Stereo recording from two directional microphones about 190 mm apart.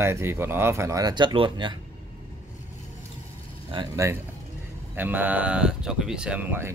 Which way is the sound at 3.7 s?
25° right (ahead or behind).